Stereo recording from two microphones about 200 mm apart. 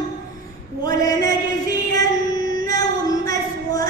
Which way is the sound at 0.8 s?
20° left (ahead or behind).